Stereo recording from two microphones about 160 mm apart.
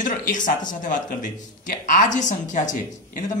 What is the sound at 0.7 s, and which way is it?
A woman's voice, 55° left (ahead or behind).